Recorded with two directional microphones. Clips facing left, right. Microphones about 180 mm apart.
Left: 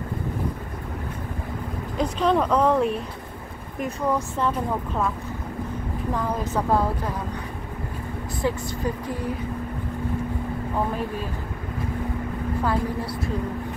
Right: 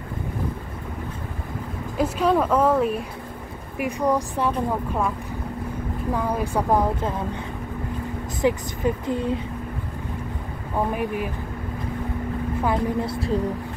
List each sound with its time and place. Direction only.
2.0 s a woman's voice: 5° right (ahead or behind)
6.1 s a woman's voice: 10° right (ahead or behind)
8.4 s a woman's voice: 20° right (ahead or behind)
10.9 s a woman's voice: 15° right (ahead or behind)
12.6 s a woman's voice: 25° right (ahead or behind)